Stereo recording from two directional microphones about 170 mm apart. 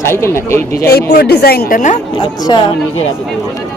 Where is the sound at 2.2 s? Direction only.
30° left (ahead or behind).